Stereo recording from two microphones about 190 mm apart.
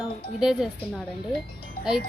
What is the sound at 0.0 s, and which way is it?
Speech, 5° right (ahead or behind).